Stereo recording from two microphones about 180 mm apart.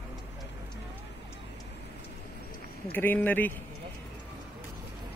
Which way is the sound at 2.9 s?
10° left (ahead or behind).